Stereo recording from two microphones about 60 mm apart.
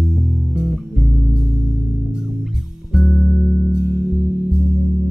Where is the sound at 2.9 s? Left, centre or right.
Centre.